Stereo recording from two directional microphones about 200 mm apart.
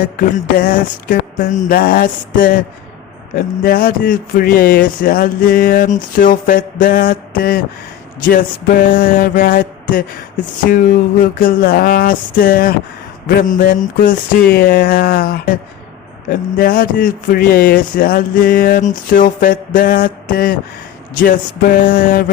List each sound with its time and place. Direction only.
0.2 s speech: 45° left (ahead or behind)
11.2 s speech: 45° left (ahead or behind)